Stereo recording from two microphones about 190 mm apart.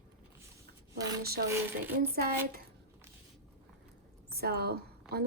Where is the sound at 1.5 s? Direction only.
10° right (ahead or behind).